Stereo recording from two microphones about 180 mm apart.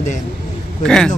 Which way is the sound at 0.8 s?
5° left (ahead or behind).